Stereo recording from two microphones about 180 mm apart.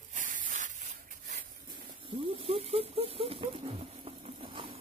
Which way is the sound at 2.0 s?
30° right (ahead or behind).